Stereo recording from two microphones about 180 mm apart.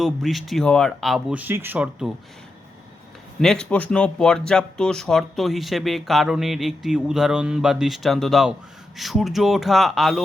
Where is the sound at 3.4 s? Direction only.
5° left (ahead or behind).